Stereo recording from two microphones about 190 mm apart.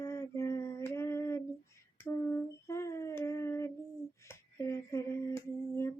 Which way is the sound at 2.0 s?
15° left (ahead or behind).